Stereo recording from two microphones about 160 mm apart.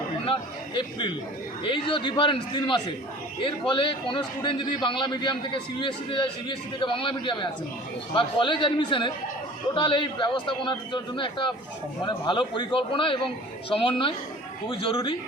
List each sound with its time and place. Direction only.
0.3 s a man's voice: 30° left (ahead or behind)